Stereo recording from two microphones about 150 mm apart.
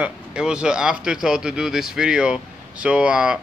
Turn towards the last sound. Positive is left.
turn(degrees=-5)  # may be behind; listen again after turning